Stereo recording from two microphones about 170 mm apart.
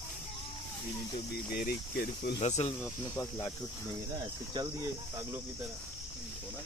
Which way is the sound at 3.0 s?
15° left (ahead or behind).